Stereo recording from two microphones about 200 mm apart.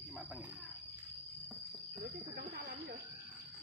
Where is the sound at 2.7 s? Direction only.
15° right (ahead or behind).